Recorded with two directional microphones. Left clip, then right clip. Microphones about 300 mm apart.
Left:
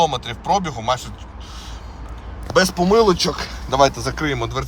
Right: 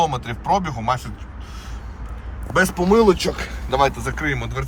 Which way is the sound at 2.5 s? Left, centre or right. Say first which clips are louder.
Left 1 dB; left.